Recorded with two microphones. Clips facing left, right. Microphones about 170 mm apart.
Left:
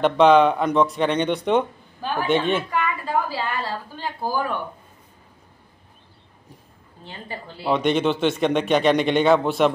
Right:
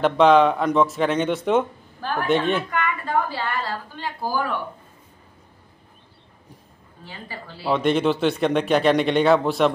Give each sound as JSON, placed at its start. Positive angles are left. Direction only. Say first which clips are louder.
{"t": 0.0, "sound": "speech", "louder": "even", "side_deg": 0}
{"t": 3.1, "sound": "a sound", "louder": "even", "side_deg": 10}
{"t": 4.0, "sound": "a woman's voice", "louder": "even", "side_deg": 20}
{"t": 7.1, "sound": "a woman's voice", "louder": "left 2 dB", "side_deg": 20}
{"t": 7.7, "sound": "speech", "louder": "even", "side_deg": 0}